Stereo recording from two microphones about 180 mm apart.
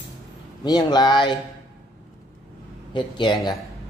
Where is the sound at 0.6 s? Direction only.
25° left (ahead or behind).